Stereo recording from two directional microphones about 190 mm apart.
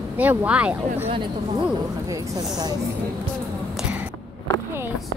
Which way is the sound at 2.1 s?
20° right (ahead or behind).